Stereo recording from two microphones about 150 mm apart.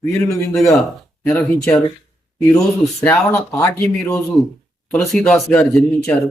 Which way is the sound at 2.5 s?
20° left (ahead or behind).